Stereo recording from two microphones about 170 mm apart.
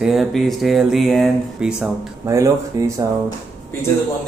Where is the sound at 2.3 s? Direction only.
20° right (ahead or behind).